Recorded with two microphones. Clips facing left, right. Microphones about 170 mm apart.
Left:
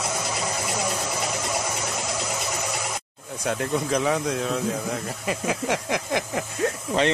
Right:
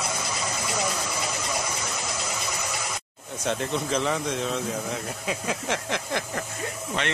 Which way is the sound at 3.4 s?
5° left (ahead or behind).